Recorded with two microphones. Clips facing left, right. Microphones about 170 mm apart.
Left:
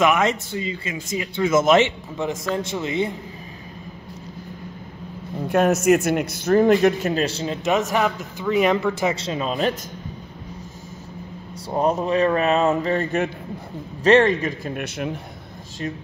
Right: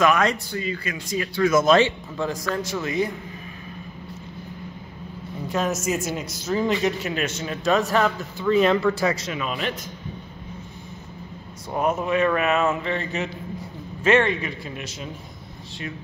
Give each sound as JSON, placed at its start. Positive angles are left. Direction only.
{"t": 0.0, "sound": "speech", "side_deg": 20}
{"t": 5.5, "sound": "a man's voice", "side_deg": 60}
{"t": 7.2, "sound": "speech", "side_deg": 35}
{"t": 9.1, "sound": "speech", "side_deg": 30}
{"t": 11.7, "sound": "speech", "side_deg": 30}
{"t": 14.0, "sound": "a man's voice", "side_deg": 40}